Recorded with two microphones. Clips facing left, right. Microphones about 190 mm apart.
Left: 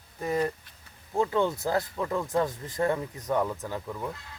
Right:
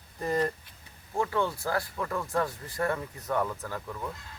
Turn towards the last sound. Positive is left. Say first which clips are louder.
# left 2 dB
turn(degrees=15)  # may be behind; listen again after turning